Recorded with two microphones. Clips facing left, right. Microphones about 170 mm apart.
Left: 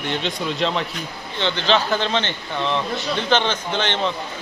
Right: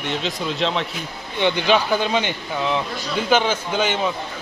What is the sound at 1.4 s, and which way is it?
Speech, 15° right (ahead or behind).